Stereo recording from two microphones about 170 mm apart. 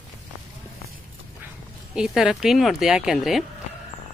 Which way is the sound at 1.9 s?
5° right (ahead or behind).